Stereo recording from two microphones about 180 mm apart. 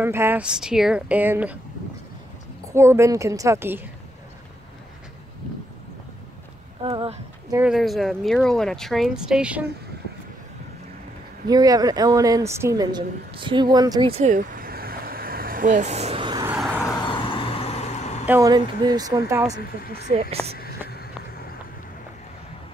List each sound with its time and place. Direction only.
0.0 s speech: 10° right (ahead or behind)
2.7 s speech: 15° right (ahead or behind)
6.8 s speech: 30° right (ahead or behind)
7.5 s speech: 5° right (ahead or behind)
11.4 s a woman's voice: 20° right (ahead or behind)
14.1 s vehicle: 45° right (ahead or behind); by 16.4 s 25° right (ahead or behind)
16.4 s a sound: 5° right (ahead or behind)
16.8 s vehicle: 25° left (ahead or behind); by 18.2 s 40° left (ahead or behind)
18.2 s speech: 10° right (ahead or behind)
18.5 s a woman's voice: 20° right (ahead or behind)
19.9 s speech: 35° right (ahead or behind)